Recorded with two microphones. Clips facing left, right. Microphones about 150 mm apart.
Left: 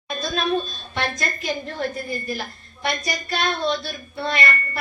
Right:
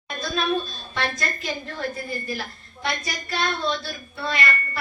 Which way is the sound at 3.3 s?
20° left (ahead or behind).